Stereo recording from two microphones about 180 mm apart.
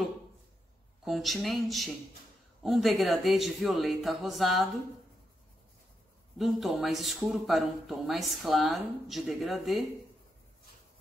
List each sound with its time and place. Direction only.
1.0 s speech: centre (ahead or behind)
6.3 s speech: centre (ahead or behind)